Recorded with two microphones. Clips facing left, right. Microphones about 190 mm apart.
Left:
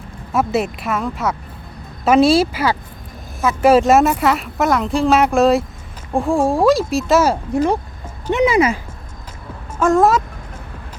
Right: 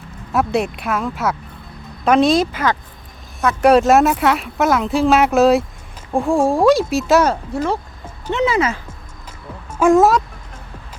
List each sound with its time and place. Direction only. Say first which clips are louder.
0.3 s speech: even; centre (ahead or behind)
7.5 s speech: left 4 dB; 15° left (ahead or behind)
9.7 s speech: right 2 dB; 10° right (ahead or behind)